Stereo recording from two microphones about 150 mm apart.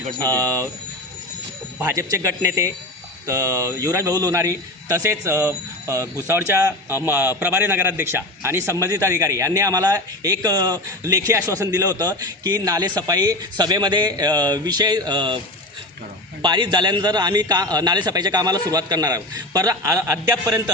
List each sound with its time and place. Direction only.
0.1 s a man's voice: 25° right (ahead or behind)
1.8 s a man's voice: 20° right (ahead or behind)
16.4 s a man's voice: 30° right (ahead or behind)